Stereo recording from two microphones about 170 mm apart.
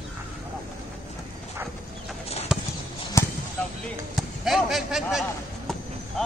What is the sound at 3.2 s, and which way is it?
Basketball bounce, 15° left (ahead or behind).